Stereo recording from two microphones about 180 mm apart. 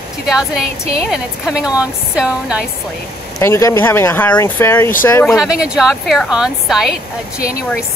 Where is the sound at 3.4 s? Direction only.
15° left (ahead or behind).